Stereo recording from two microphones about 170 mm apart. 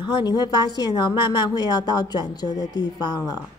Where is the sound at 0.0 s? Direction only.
25° left (ahead or behind).